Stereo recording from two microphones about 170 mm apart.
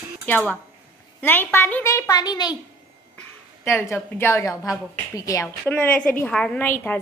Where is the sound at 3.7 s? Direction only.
15° left (ahead or behind).